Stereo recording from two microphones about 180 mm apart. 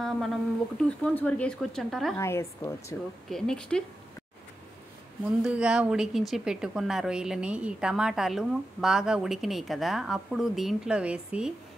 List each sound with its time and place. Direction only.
0.0 s a woman's voice: centre (ahead or behind)
2.1 s a woman's voice: 15° left (ahead or behind)
3.3 s a woman's voice: 5° left (ahead or behind)
5.4 s a woman's voice: 5° right (ahead or behind)